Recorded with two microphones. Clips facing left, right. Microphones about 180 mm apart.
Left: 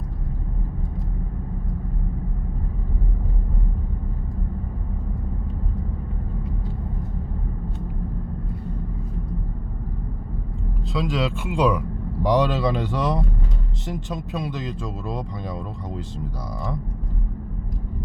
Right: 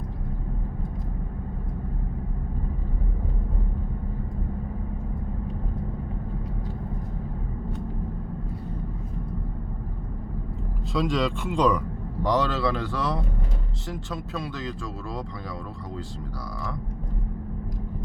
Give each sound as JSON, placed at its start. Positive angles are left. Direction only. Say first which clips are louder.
{"t": 10.9, "sound": "speech", "louder": "even", "side_deg": 0}